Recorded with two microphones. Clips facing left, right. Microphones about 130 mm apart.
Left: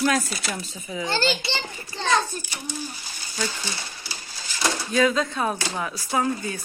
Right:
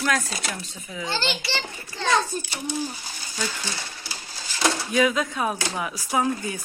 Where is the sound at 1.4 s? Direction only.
25° left (ahead or behind).